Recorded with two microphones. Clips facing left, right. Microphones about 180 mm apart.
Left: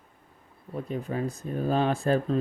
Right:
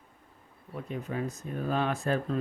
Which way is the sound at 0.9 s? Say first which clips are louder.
Left 3 dB; 35° left (ahead or behind).